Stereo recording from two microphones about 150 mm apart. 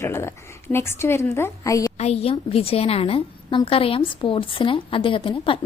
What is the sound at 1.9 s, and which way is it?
A woman's voice, 45° left (ahead or behind).